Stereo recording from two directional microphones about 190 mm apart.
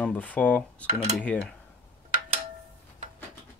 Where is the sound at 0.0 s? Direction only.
10° left (ahead or behind).